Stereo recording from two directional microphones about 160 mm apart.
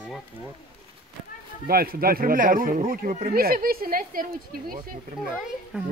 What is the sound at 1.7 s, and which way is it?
Speech, 65° right (ahead or behind).